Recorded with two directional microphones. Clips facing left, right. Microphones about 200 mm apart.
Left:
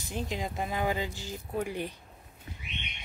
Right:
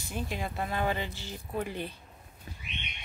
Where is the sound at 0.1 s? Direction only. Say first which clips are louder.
Left 1 dB; 15° left (ahead or behind).